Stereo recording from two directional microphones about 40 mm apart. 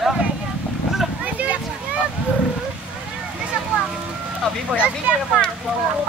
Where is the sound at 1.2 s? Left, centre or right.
Right.